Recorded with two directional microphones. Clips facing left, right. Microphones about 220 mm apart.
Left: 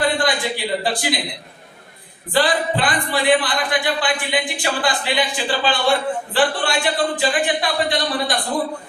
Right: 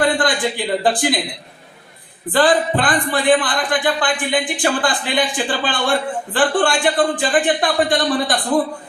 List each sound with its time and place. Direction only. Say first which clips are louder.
0.0 s speech: right 3 dB; 50° right (ahead or behind)
2.3 s speech: right 4 dB; 50° right (ahead or behind)